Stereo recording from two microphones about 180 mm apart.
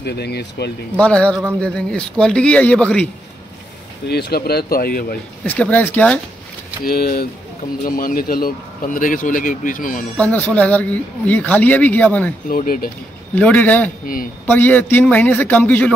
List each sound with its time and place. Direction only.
0.0 s speech: 65° left (ahead or behind)
0.9 s speech: 5° left (ahead or behind)
4.1 s speech: 65° left (ahead or behind)
5.4 s speech: 10° left (ahead or behind)
6.8 s a man's voice: 55° left (ahead or behind)
10.1 s speech: 10° left (ahead or behind)
12.4 s a man's voice: 50° left (ahead or behind)
13.3 s speech: 10° left (ahead or behind)